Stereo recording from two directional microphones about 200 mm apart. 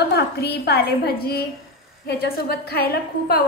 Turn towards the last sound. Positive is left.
turn(degrees=50)  # may be behind; listen again after turning